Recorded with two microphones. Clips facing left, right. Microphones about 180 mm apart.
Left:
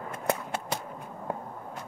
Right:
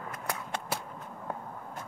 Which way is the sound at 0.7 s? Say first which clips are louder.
Left 1 dB; 5° right (ahead or behind).